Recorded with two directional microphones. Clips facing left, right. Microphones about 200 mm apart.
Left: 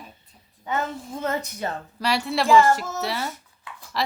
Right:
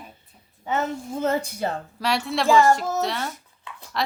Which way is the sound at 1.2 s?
30° right (ahead or behind).